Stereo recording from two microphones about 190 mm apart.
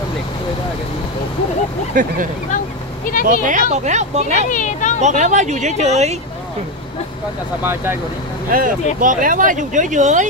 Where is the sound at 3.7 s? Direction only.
40° right (ahead or behind).